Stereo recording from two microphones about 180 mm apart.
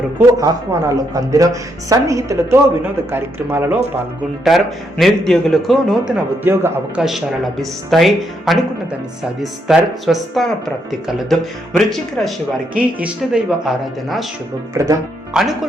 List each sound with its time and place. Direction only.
0.3 s speech: 20° right (ahead or behind)
4.4 s a man's voice: centre (ahead or behind)
6.4 s speech: 10° right (ahead or behind)
7.6 s a man's voice: centre (ahead or behind)
14.7 s speech: 20° right (ahead or behind)
15.3 s speech: 5° right (ahead or behind)